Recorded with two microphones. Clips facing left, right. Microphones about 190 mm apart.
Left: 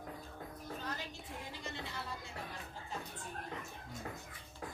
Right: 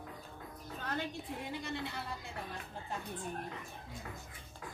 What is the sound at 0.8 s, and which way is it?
Music, 60° right (ahead or behind).